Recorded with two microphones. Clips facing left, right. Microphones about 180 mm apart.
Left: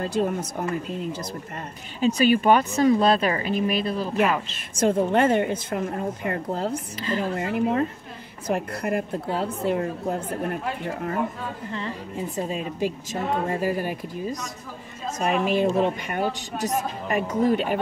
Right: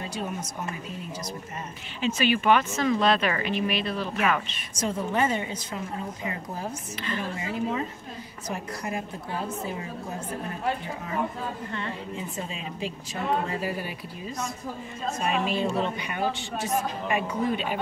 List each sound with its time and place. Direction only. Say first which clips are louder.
0.0 s a woman's voice: left 8 dB; 55° left (ahead or behind)
2.0 s speech: left 5 dB; 40° left (ahead or behind)
4.7 s a woman's voice: left 7 dB; 55° left (ahead or behind)
12.4 s a woman's voice: left 7 dB; 45° left (ahead or behind)